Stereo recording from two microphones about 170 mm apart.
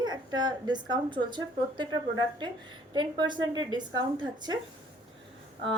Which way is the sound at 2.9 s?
25° right (ahead or behind).